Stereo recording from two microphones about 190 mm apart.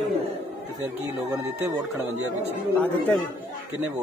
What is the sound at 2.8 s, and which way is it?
Speech, 10° left (ahead or behind).